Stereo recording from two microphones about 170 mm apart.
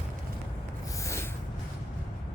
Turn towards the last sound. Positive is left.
turn(degrees=15)  # may be behind; listen again after turning